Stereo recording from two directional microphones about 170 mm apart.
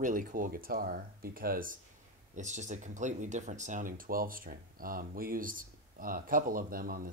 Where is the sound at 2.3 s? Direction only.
45° right (ahead or behind).